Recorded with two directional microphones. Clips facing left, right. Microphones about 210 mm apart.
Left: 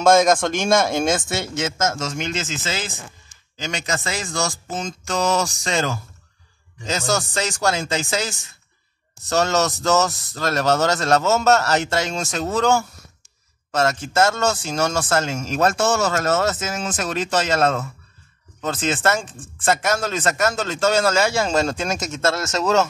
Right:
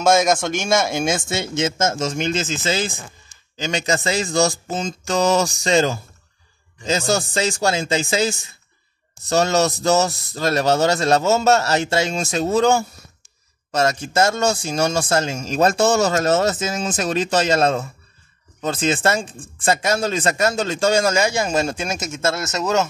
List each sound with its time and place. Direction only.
0.0 s speech: 5° right (ahead or behind)
1.4 s speech: 20° right (ahead or behind)
3.5 s speech: 30° right (ahead or behind)
5.3 s a sound: 30° right (ahead or behind)
6.9 s speech: 25° right (ahead or behind)
9.3 s speech: 15° right (ahead or behind)
12.2 s speech: 25° right (ahead or behind)
13.7 s speech: 15° right (ahead or behind)
19.0 s speech: 15° right (ahead or behind)